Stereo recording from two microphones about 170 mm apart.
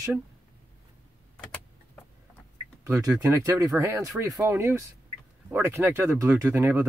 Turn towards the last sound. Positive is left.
turn(degrees=-15)  # may be behind; listen again after turning